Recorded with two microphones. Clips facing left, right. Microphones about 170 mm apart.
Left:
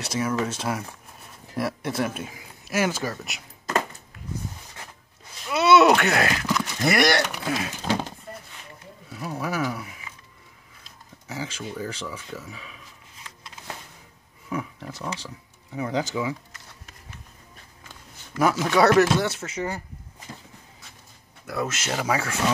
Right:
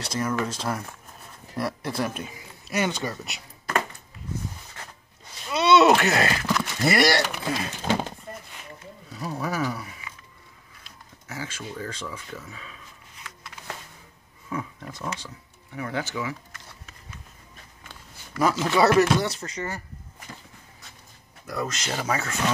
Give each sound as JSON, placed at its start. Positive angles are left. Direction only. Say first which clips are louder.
{"t": 0.0, "sound": "speech", "louder": "left 1 dB", "side_deg": 5}
{"t": 5.5, "sound": "speech", "louder": "left 1 dB", "side_deg": 0}
{"t": 9.3, "sound": "speech", "louder": "left 1 dB", "side_deg": 5}
{"t": 11.2, "sound": "speech", "louder": "left 2 dB", "side_deg": 15}
{"t": 14.5, "sound": "speech", "louder": "left 2 dB", "side_deg": 10}
{"t": 15.7, "sound": "speech", "louder": "left 4 dB", "side_deg": 20}
{"t": 18.4, "sound": "speech", "louder": "left 1 dB", "side_deg": 0}
{"t": 21.5, "sound": "speech", "louder": "left 2 dB", "side_deg": 5}